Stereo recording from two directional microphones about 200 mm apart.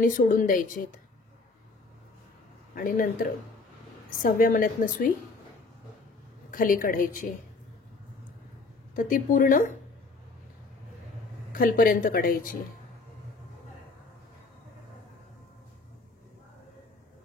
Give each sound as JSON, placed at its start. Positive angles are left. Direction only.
{"t": 0.0, "sound": "speech", "side_deg": 45}
{"t": 2.7, "sound": "speech", "side_deg": 45}
{"t": 6.5, "sound": "speech", "side_deg": 45}
{"t": 8.9, "sound": "a woman's voice", "side_deg": 40}
{"t": 11.5, "sound": "speech", "side_deg": 45}